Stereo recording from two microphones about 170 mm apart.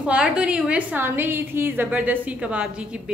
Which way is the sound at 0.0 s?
5° right (ahead or behind).